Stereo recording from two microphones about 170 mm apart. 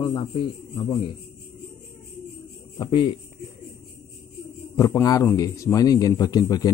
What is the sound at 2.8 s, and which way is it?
Speech, 30° left (ahead or behind).